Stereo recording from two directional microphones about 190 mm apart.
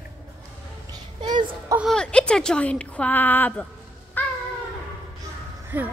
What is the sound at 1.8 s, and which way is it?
A woman's voice, 5° left (ahead or behind).